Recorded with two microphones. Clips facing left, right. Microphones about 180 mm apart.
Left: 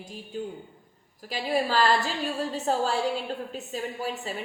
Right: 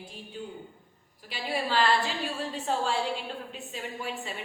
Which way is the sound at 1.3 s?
40° left (ahead or behind).